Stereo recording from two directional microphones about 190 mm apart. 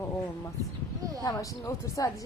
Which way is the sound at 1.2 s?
20° left (ahead or behind).